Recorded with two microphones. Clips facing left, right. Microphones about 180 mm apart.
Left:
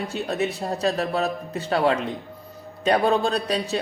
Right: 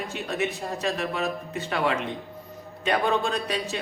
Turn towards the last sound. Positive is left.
turn(degrees=35)  # may be behind; listen again after turning